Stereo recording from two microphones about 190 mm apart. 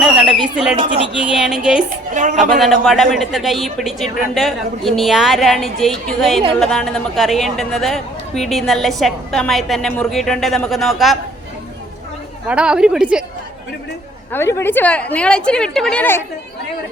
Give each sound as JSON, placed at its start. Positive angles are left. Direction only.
{"t": 0.0, "sound": "a sound", "side_deg": -5}
{"t": 0.5, "sound": "speech", "side_deg": -5}
{"t": 2.1, "sound": "speech", "side_deg": -40}
{"t": 2.4, "sound": "speech", "side_deg": 0}
{"t": 12.5, "sound": "speech", "side_deg": -5}
{"t": 14.3, "sound": "a woman's voice", "side_deg": 15}